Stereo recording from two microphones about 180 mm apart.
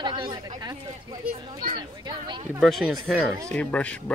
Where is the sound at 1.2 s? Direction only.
55° right (ahead or behind).